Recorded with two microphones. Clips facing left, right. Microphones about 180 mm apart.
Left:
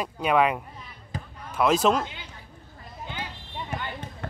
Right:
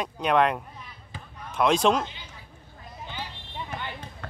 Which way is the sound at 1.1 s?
40° left (ahead or behind).